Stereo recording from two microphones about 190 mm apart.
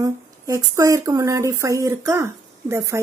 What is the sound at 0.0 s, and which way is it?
A woman's voice, 15° right (ahead or behind).